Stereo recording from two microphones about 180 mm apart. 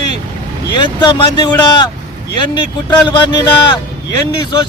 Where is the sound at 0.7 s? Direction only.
25° left (ahead or behind).